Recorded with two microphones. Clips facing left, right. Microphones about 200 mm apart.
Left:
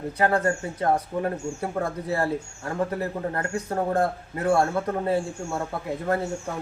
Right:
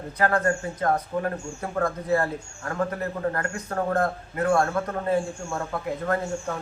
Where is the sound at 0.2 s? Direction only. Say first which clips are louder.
Even; 25° left (ahead or behind).